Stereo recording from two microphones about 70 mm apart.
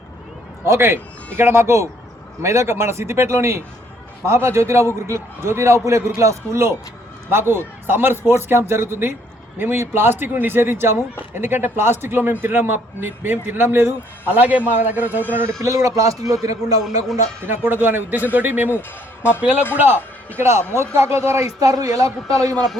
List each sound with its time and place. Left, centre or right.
0.6 s a man's voice: right
15.6 s a man's voice: right
17.4 s speech: right
18.7 s speech: left
19.4 s a man's voice: right